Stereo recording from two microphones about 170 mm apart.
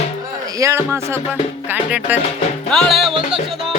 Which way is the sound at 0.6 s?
15° right (ahead or behind).